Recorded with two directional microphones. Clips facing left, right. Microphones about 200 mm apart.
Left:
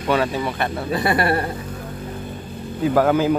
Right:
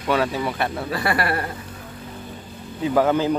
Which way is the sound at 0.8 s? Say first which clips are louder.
Left 6 dB; 20° left (ahead or behind).